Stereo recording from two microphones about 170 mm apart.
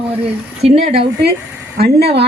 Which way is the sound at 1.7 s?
70° right (ahead or behind).